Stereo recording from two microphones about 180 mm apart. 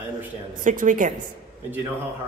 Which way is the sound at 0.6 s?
45° right (ahead or behind).